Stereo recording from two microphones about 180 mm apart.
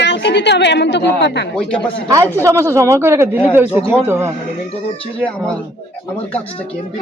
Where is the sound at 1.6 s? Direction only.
5° left (ahead or behind).